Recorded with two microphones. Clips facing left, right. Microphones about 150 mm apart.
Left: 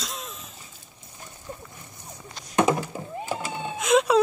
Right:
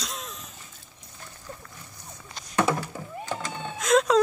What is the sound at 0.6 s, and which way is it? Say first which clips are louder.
Dog: left 1 dB; 15° left (ahead or behind).